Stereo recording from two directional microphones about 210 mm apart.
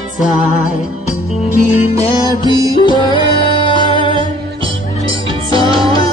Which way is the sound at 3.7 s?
20° right (ahead or behind).